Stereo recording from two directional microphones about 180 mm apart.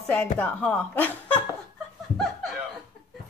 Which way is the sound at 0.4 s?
5° left (ahead or behind).